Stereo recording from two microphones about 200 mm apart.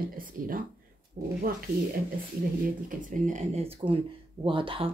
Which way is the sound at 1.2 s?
35° right (ahead or behind).